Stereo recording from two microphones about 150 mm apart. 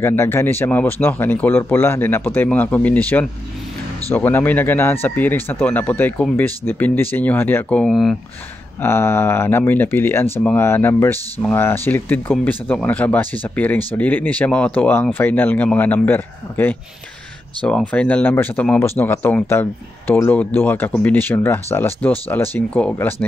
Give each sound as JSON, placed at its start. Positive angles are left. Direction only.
{"t": 0.0, "sound": "speech", "side_deg": 15}
{"t": 8.8, "sound": "speech", "side_deg": 15}